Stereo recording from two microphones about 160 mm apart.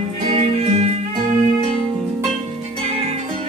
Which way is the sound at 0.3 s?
40° right (ahead or behind).